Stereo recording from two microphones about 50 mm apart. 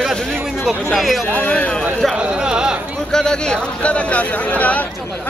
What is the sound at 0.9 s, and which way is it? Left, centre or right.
Speech, centre.